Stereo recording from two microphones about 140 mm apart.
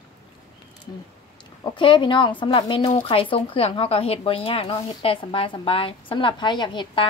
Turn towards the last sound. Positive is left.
turn(degrees=35)  # may be behind; listen again after turning